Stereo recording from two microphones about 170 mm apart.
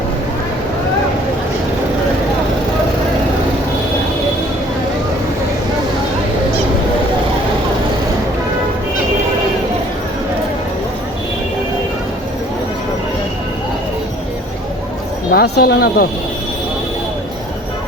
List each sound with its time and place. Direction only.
15.3 s speech: 65° left (ahead or behind)